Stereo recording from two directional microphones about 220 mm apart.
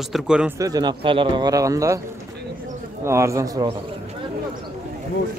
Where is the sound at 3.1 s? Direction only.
10° right (ahead or behind).